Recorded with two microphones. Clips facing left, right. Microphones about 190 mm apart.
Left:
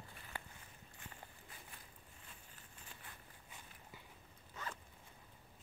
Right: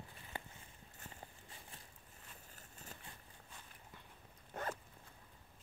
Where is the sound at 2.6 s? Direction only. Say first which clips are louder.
Right 4 dB; 45° right (ahead or behind).